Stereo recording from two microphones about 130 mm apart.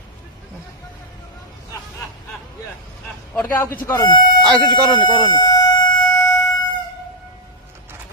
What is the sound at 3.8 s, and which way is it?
Speech, 25° left (ahead or behind).